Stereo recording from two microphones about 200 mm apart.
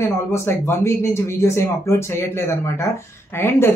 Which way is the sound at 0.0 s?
10° left (ahead or behind).